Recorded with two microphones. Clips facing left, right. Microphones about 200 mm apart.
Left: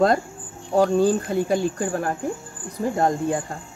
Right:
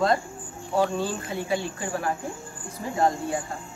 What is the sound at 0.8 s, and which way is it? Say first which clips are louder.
Speech: left 7 dB; 45° left (ahead or behind).